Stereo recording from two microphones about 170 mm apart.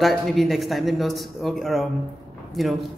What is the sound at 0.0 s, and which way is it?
A man's voice, centre (ahead or behind).